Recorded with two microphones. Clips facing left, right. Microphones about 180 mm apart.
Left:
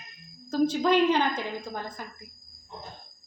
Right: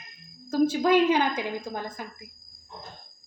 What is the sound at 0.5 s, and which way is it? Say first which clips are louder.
Speech: right 2 dB; 10° right (ahead or behind).